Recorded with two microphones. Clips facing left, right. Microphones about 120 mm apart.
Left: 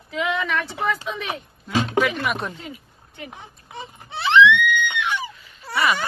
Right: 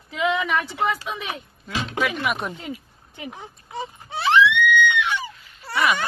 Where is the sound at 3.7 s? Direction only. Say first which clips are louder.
Right 3 dB; 35° right (ahead or behind).